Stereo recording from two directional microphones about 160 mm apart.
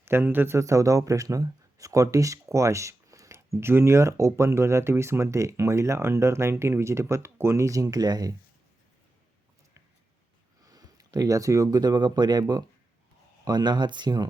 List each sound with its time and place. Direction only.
0.0 s speech: 15° right (ahead or behind)
10.6 s speech: 25° right (ahead or behind)